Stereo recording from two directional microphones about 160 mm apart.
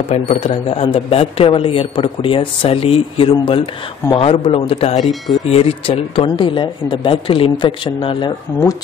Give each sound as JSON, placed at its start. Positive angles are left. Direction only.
{"t": 0.1, "sound": "speech", "side_deg": 40}